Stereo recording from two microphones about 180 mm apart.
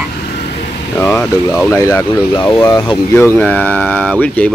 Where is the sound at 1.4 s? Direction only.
15° left (ahead or behind).